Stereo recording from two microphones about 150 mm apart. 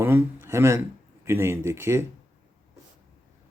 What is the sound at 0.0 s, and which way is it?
A man's voice, 15° right (ahead or behind).